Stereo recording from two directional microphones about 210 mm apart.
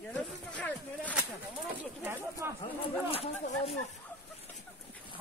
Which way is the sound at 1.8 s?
10° right (ahead or behind).